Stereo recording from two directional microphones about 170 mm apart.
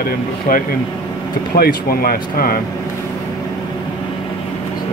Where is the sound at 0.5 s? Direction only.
55° left (ahead or behind).